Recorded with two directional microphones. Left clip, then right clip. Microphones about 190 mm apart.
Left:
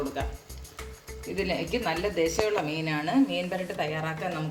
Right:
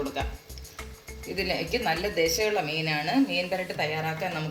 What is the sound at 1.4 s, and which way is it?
A woman's voice, 40° left (ahead or behind).